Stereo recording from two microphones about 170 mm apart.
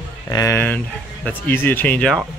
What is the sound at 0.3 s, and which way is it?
Speech, 20° left (ahead or behind).